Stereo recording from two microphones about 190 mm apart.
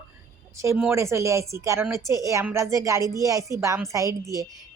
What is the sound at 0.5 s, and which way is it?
A woman's voice, 15° right (ahead or behind).